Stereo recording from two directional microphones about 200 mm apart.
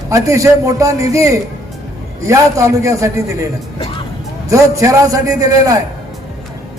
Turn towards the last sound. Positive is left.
turn(degrees=-15)  # may be behind; listen again after turning